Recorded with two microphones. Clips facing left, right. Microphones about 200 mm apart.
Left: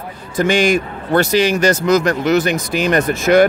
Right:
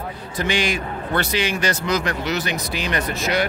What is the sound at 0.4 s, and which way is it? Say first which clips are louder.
A man's voice: left 9 dB; 45° left (ahead or behind).